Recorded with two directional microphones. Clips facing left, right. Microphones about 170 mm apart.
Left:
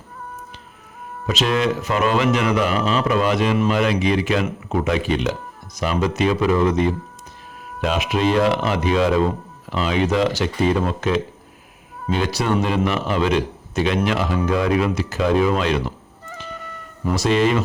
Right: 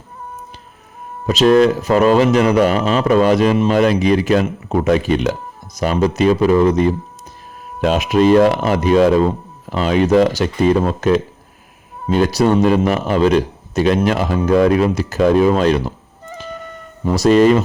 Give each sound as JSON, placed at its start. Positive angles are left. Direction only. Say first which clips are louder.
{"t": 1.3, "sound": "a man's voice", "louder": "right 9 dB", "side_deg": -40}
{"t": 17.0, "sound": "speech", "louder": "right 4 dB", "side_deg": -30}
{"t": 17.2, "sound": "a man's voice", "louder": "right 8 dB", "side_deg": -40}